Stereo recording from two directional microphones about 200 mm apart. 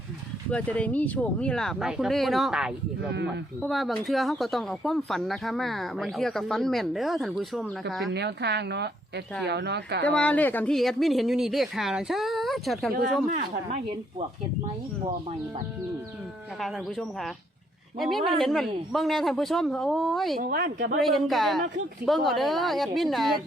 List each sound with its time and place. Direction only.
0.5 s speech: 5° left (ahead or behind)
8.1 s speech: 55° right (ahead or behind)
10.1 s speech: 5° left (ahead or behind)
16.6 s speech: centre (ahead or behind)
20.4 s a woman's voice: 45° right (ahead or behind)
21.0 s speech: centre (ahead or behind)